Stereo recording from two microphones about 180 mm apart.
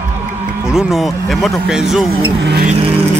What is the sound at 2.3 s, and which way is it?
Vehicle, 80° right.